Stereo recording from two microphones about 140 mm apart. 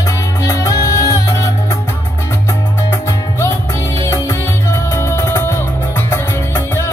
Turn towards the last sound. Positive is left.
turn(degrees=20)  # may be behind; listen again after turning